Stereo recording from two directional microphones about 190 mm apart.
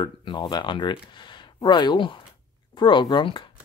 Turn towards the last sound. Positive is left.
turn(degrees=25)  # may be behind; listen again after turning